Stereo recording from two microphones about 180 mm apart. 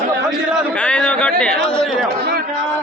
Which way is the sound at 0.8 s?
5° left (ahead or behind).